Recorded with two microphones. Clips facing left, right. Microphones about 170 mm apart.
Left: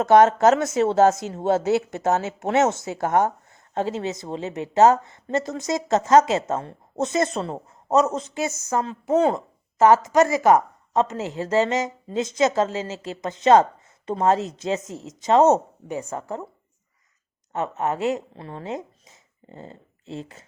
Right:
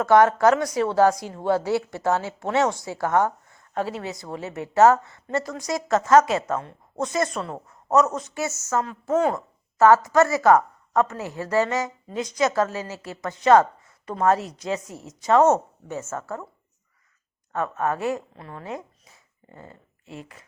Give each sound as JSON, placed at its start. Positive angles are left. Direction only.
{"t": 0.0, "sound": "speech", "side_deg": 20}
{"t": 17.5, "sound": "speech", "side_deg": 20}